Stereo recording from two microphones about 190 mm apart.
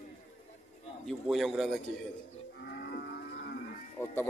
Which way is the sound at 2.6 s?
60° left (ahead or behind).